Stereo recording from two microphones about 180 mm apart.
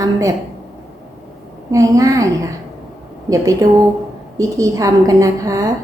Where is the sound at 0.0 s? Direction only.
20° right (ahead or behind).